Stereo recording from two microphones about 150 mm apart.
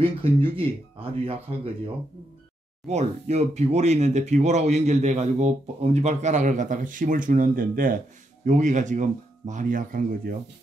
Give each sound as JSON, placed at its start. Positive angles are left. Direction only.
{"t": 0.0, "sound": "speech", "side_deg": -40}
{"t": 2.9, "sound": "speech", "side_deg": -50}
{"t": 8.5, "sound": "speech", "side_deg": -55}